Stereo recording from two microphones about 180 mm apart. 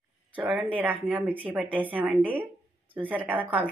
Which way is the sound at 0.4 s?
5° right (ahead or behind).